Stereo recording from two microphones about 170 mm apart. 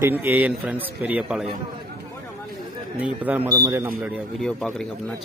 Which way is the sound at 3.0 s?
10° right (ahead or behind).